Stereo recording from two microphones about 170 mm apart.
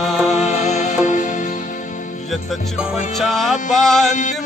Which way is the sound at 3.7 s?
Centre (ahead or behind).